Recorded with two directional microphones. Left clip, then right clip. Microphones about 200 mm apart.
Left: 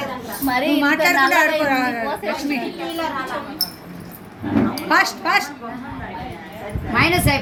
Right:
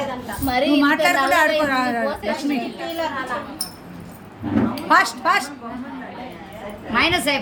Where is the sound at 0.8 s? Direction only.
50° right (ahead or behind).